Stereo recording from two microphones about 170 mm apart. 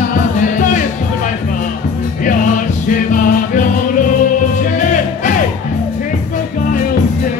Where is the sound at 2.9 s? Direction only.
55° left (ahead or behind).